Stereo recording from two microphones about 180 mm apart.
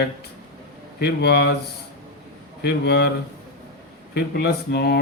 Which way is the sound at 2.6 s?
65° left (ahead or behind).